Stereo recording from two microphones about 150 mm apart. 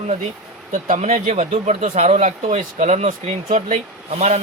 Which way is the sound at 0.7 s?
50° right (ahead or behind).